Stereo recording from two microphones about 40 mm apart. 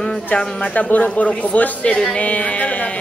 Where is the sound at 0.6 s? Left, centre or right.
Left.